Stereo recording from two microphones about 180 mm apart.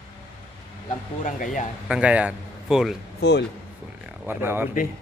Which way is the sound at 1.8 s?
5° right (ahead or behind).